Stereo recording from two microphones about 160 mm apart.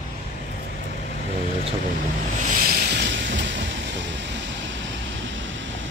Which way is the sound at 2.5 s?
65° right (ahead or behind).